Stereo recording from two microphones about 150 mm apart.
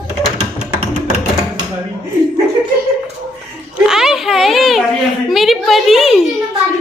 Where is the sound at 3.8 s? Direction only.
5° right (ahead or behind).